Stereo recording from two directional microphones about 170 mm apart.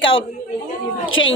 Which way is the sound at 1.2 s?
90° left.